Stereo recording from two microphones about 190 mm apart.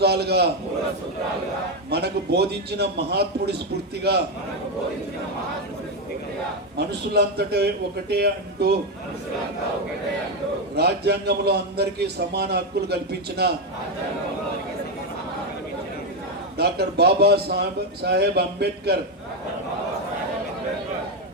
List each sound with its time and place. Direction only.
0.0 s a man's voice: 60° right (ahead or behind)
1.9 s a man's voice: 60° right (ahead or behind)
6.7 s a man's voice: 60° right (ahead or behind)
10.8 s a man's voice: 60° right (ahead or behind)
16.6 s a man's voice: 60° right (ahead or behind)